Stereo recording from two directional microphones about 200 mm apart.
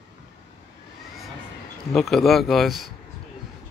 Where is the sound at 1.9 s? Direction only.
Centre (ahead or behind).